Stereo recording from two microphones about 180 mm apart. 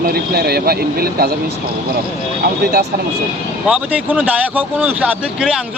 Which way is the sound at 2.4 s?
60° right (ahead or behind).